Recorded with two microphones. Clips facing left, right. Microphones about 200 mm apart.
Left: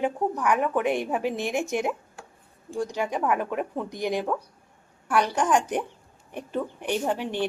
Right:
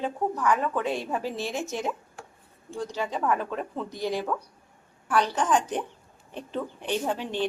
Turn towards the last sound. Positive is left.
turn(degrees=10)  # may be behind; listen again after turning